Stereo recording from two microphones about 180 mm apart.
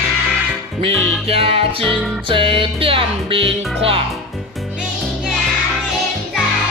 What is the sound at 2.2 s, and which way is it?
Music, 30° right (ahead or behind).